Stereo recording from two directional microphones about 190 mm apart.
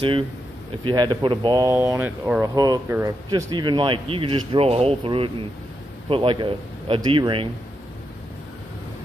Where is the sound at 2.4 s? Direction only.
20° right (ahead or behind).